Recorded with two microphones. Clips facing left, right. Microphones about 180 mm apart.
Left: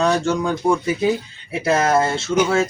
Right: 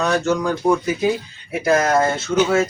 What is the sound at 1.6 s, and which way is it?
Speech, 25° left (ahead or behind).